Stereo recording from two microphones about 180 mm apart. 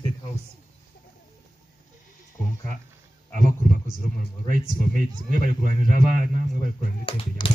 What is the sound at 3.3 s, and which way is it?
A man's voice, 45° right (ahead or behind).